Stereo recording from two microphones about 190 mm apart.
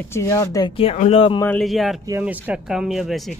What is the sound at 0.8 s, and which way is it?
Speech, 30° left (ahead or behind).